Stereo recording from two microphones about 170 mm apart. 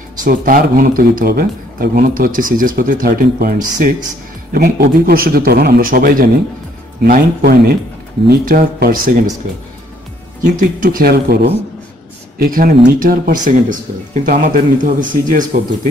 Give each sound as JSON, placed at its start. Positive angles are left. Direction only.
{"t": 0.2, "sound": "speech", "side_deg": -55}
{"t": 10.4, "sound": "speech", "side_deg": -55}
{"t": 12.4, "sound": "a man's voice", "side_deg": -55}